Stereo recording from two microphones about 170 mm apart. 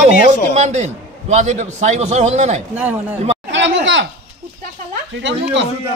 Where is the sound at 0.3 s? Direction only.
40° right (ahead or behind).